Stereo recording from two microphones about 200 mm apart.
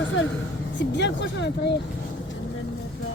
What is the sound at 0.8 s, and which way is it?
Speech, 60° left (ahead or behind).